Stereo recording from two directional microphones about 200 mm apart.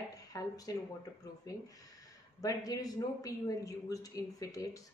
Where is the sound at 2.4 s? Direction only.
20° left (ahead or behind).